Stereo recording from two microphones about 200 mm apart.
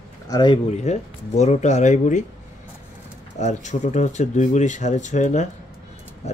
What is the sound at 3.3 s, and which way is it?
Speech, 35° left (ahead or behind).